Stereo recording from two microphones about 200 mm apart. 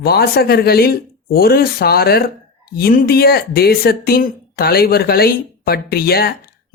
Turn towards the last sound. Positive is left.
turn(degrees=50)  # may be behind; listen again after turning